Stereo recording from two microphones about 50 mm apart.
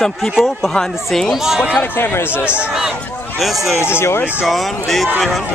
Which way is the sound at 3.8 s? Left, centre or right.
Left.